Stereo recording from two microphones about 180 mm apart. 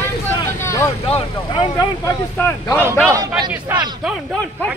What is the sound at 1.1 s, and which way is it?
Speech, 30° left (ahead or behind).